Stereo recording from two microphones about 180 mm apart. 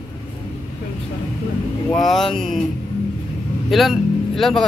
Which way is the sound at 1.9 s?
Centre (ahead or behind).